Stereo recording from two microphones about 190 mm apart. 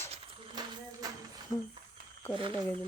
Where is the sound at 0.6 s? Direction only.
20° right (ahead or behind).